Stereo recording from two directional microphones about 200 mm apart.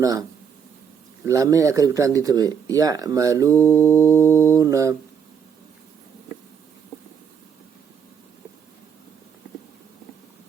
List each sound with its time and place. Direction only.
0.0 s speech: 15° right (ahead or behind)
3.5 s mantra: 10° left (ahead or behind)
4.5 s speech: 15° right (ahead or behind)